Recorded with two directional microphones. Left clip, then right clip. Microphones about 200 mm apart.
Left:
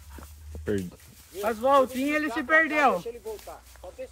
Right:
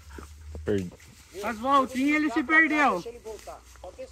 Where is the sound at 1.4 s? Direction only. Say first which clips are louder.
Left 2 dB; 25° left (ahead or behind).